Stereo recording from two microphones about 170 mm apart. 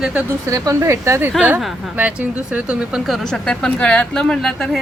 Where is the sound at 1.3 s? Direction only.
5° right (ahead or behind).